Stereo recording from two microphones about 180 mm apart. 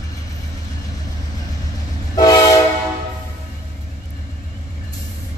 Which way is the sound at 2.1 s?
20° left (ahead or behind).